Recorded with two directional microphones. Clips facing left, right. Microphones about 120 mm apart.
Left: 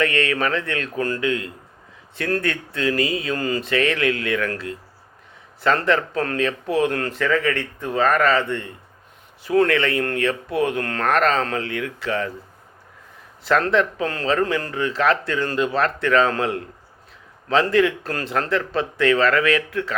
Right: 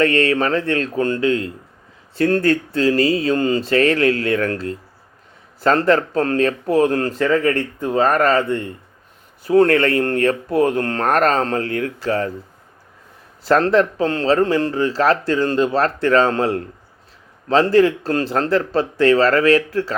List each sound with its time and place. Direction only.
0.0 s a man's voice: 35° right (ahead or behind)
13.4 s a man's voice: 35° right (ahead or behind)